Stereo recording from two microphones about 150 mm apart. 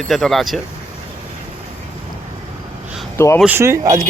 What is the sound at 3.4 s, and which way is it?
Speech, 15° right (ahead or behind).